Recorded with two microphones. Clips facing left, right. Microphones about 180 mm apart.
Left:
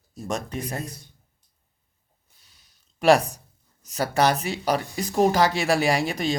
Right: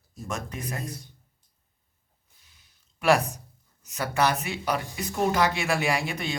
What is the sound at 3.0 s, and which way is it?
Speech, 30° left (ahead or behind).